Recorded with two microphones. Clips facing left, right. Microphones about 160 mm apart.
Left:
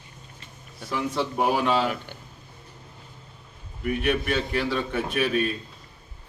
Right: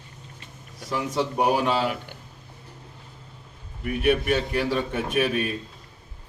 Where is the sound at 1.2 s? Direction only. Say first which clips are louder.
Right 2 dB; 15° right (ahead or behind).